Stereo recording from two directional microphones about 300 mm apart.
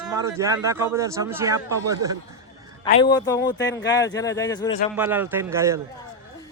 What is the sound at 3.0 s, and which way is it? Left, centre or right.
Speech, centre.